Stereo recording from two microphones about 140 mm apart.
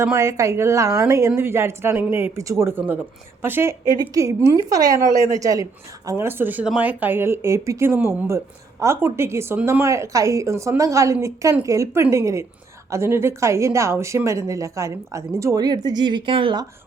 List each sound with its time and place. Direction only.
0.0 s a woman's voice: 20° right (ahead or behind); by 16.6 s 35° right (ahead or behind)